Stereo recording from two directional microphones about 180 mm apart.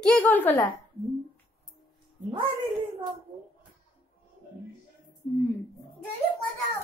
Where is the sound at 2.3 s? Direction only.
25° right (ahead or behind).